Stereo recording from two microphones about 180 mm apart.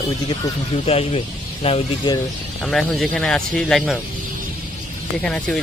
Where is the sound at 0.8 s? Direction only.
35° left (ahead or behind).